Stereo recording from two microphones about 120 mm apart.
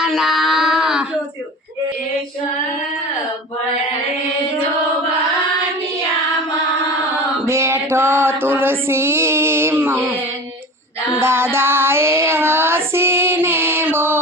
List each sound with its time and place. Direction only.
0.0 s child singing: centre (ahead or behind)
7.4 s music: 20° right (ahead or behind)
11.1 s child singing: 20° right (ahead or behind)